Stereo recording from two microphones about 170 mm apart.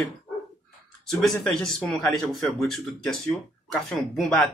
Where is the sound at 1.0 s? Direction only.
5° left (ahead or behind).